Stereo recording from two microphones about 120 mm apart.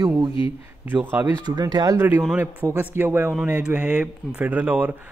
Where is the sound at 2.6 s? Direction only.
20° right (ahead or behind).